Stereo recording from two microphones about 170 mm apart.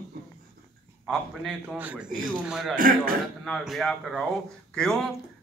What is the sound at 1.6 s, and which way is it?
A man's voice, 10° right (ahead or behind).